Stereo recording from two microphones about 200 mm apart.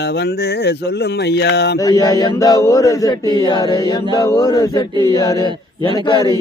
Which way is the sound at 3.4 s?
20° left (ahead or behind).